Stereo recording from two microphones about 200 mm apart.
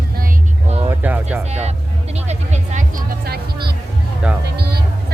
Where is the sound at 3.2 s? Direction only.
50° right (ahead or behind).